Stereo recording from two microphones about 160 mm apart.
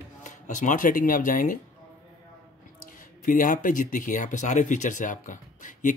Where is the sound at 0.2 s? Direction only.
50° left (ahead or behind).